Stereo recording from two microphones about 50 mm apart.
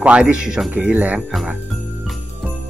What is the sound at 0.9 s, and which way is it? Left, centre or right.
Jingle bell, right.